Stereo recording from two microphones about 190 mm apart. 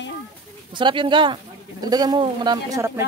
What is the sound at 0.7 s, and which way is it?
Speech, 25° right (ahead or behind).